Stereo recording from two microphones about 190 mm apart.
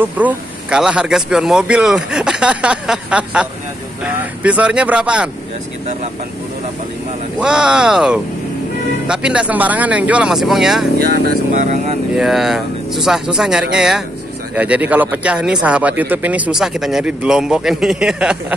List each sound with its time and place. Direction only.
0.0 s speech: 10° right (ahead or behind)
7.3 s speech: 5° right (ahead or behind)
11.6 s speech: 40° right (ahead or behind)
12.2 s speech: centre (ahead or behind)